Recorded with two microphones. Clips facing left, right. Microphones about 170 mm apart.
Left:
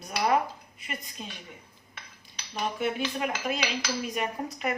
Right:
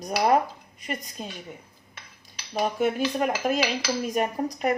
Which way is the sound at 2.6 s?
40° right (ahead or behind).